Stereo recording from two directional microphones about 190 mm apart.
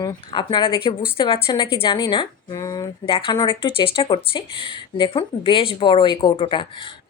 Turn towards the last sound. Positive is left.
turn(degrees=25)  # may be behind; listen again after turning